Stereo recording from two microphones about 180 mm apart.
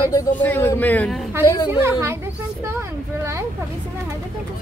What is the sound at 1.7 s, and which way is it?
Speech, 10° right (ahead or behind).